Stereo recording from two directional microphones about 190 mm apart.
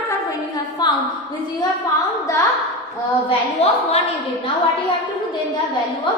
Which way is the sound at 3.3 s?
35° left (ahead or behind).